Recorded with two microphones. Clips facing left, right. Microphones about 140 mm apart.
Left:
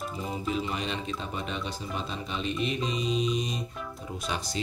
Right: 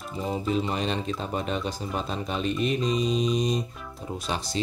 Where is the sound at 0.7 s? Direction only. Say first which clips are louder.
Right 4 dB; 35° right (ahead or behind).